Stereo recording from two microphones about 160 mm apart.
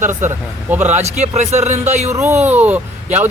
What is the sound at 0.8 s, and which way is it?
Speech, 45° right (ahead or behind).